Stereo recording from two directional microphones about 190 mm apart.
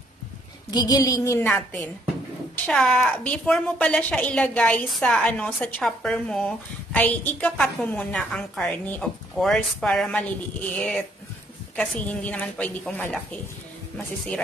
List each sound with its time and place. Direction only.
0.7 s a woman's voice: 20° left (ahead or behind)